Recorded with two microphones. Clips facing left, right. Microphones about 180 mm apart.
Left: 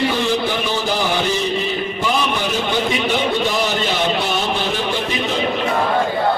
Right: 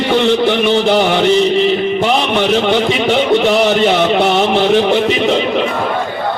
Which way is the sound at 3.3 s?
70° right (ahead or behind).